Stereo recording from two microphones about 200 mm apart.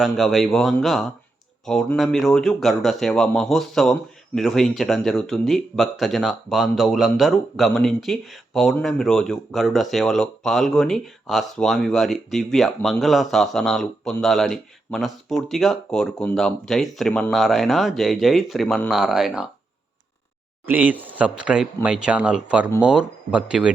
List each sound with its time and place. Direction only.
0.0 s speech: centre (ahead or behind)
20.7 s speech: 10° right (ahead or behind)